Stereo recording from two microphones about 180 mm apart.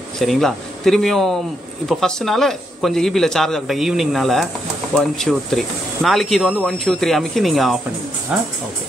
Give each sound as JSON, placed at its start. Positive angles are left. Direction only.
{"t": 0.2, "sound": "speech", "side_deg": 0}